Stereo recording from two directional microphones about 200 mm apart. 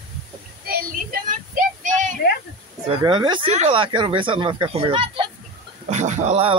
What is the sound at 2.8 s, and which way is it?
A man's voice, 25° right (ahead or behind).